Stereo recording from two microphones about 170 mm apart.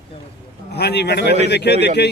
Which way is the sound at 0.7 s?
75° left (ahead or behind).